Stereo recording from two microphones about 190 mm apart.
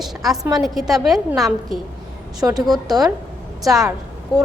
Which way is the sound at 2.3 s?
20° right (ahead or behind).